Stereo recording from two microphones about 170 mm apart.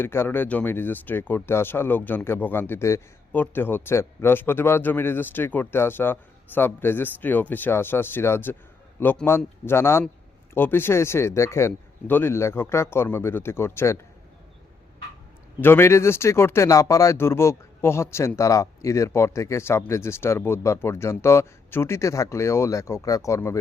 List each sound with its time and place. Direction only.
0.0 s speech: 10° left (ahead or behind)
15.6 s speech: 15° left (ahead or behind)